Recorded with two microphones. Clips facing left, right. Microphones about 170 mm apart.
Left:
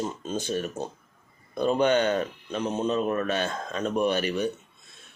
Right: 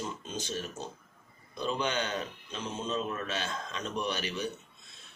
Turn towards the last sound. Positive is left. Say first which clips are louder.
# left 9 dB
turn(degrees=55)  # may be behind; listen again after turning